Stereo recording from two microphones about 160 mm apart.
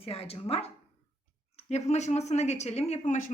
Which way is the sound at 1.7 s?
45° left (ahead or behind).